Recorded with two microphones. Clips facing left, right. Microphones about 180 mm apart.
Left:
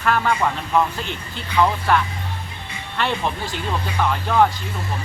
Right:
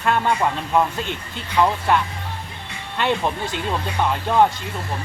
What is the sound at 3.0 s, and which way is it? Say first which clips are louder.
Speech: right 2 dB; 20° right (ahead or behind).